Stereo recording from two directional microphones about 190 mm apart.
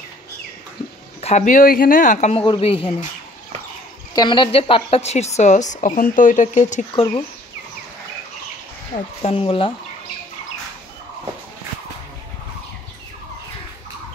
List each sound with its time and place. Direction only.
1.2 s a woman's voice: 40° left (ahead or behind)
4.1 s a woman's voice: 25° left (ahead or behind); by 7.1 s 40° left (ahead or behind)
8.9 s speech: 30° left (ahead or behind)